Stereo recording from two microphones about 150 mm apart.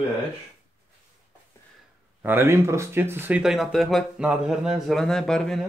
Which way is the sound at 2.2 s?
15° right (ahead or behind).